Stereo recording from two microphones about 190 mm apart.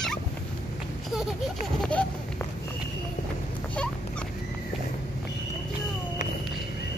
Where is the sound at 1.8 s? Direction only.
5° left (ahead or behind).